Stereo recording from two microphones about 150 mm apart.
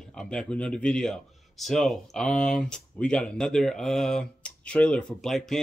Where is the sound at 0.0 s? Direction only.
5° left (ahead or behind).